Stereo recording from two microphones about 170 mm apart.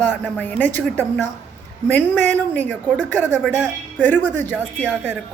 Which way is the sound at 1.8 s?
10° left (ahead or behind).